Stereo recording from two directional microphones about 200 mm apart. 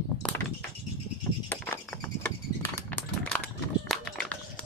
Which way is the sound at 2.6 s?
10° left (ahead or behind).